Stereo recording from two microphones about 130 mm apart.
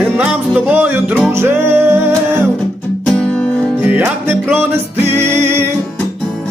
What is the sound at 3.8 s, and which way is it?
Music, 10° right (ahead or behind).